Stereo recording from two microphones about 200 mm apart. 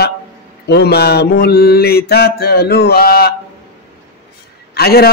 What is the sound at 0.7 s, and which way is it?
A man's voice, 55° left (ahead or behind).